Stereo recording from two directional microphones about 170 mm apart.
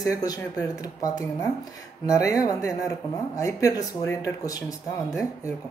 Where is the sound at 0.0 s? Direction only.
20° left (ahead or behind).